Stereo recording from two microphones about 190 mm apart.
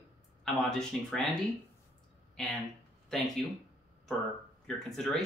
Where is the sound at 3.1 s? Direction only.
Centre (ahead or behind).